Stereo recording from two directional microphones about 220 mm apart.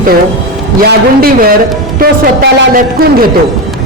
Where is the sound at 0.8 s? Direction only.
40° right (ahead or behind).